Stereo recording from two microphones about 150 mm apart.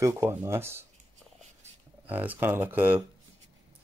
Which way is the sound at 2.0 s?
10° right (ahead or behind).